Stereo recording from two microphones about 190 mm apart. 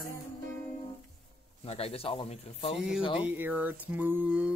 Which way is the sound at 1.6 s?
30° left (ahead or behind).